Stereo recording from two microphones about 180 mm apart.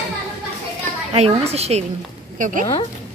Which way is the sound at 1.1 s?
35° right (ahead or behind).